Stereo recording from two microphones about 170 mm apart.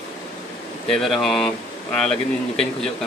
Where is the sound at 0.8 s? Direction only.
Centre (ahead or behind).